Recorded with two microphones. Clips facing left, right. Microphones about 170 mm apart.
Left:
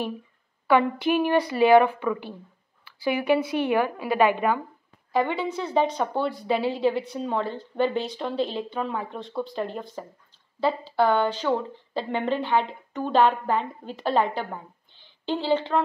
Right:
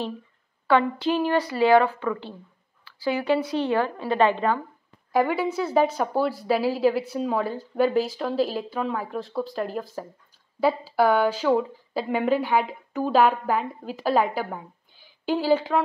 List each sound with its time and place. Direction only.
0.7 s speech: 15° left (ahead or behind)
5.1 s a woman's voice: 10° right (ahead or behind)